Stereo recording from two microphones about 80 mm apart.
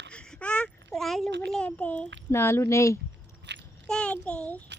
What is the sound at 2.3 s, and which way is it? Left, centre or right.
Speech, left.